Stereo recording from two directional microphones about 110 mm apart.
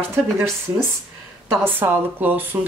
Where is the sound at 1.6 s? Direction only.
20° right (ahead or behind).